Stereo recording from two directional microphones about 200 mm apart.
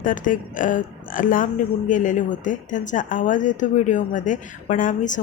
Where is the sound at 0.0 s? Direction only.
40° left (ahead or behind).